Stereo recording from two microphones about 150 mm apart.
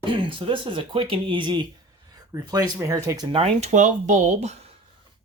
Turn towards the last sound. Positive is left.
turn(degrees=-45)  # may be behind; listen again after turning